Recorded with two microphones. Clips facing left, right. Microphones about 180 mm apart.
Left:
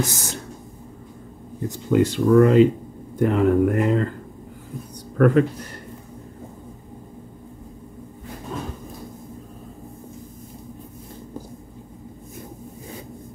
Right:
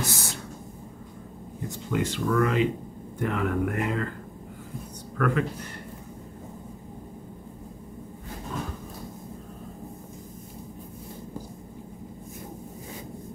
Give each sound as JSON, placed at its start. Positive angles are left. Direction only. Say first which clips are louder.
{"t": 0.0, "sound": "speech", "louder": "left 5 dB", "side_deg": 45}
{"t": 1.7, "sound": "speech", "louder": "left 9 dB", "side_deg": 35}
{"t": 5.1, "sound": "speech", "louder": "left 9 dB", "side_deg": 35}